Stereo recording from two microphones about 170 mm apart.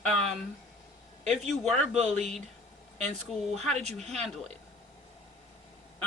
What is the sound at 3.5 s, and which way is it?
Speech, 5° left (ahead or behind).